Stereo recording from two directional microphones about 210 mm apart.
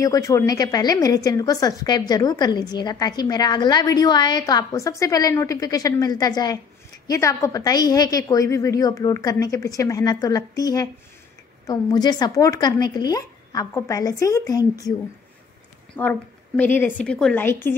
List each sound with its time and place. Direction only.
0.0 s a woman's voice: 15° left (ahead or behind)
16.0 s a woman's voice: 10° left (ahead or behind)